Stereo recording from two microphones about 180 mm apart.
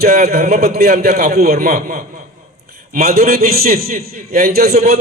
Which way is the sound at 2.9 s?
55° right (ahead or behind).